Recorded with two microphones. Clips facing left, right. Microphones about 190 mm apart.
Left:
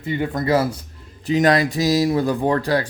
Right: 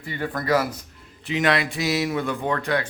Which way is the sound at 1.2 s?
40° left (ahead or behind).